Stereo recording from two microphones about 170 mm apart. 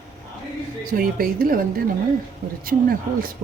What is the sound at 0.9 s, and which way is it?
A woman's voice, 60° right (ahead or behind).